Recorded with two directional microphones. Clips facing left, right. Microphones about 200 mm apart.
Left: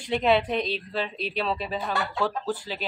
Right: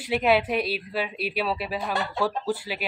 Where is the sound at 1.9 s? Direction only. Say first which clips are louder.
Right 1 dB; 20° right (ahead or behind).